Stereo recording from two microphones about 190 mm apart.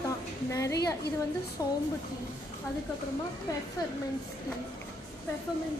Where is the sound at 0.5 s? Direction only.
15° left (ahead or behind).